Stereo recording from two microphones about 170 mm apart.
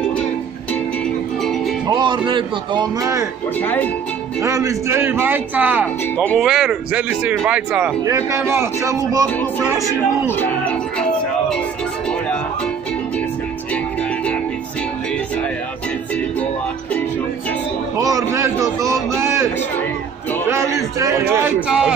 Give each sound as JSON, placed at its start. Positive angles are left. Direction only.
{"t": 1.9, "sound": "speech", "side_deg": -25}
{"t": 3.5, "sound": "speech", "side_deg": 10}
{"t": 4.4, "sound": "speech", "side_deg": -20}
{"t": 8.0, "sound": "speech", "side_deg": -15}
{"t": 9.8, "sound": "music", "side_deg": 10}
{"t": 17.9, "sound": "a sound", "side_deg": -20}
{"t": 20.4, "sound": "a sound", "side_deg": -15}
{"t": 21.6, "sound": "a man's voice", "side_deg": -5}